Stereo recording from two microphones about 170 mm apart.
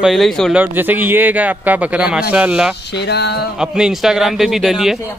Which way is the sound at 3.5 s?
5° right (ahead or behind).